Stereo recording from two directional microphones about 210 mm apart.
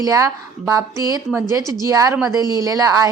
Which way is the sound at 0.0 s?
15° right (ahead or behind).